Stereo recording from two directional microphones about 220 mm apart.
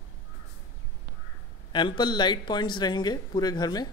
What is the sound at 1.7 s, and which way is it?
Speech, 20° left (ahead or behind).